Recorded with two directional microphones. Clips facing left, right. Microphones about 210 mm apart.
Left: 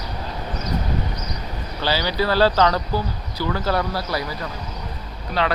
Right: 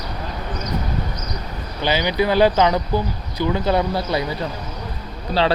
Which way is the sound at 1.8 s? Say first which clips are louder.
Right 3 dB; 20° right (ahead or behind).